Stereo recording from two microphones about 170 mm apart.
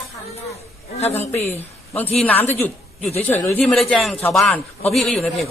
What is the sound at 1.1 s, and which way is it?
A woman's voice, 15° left (ahead or behind).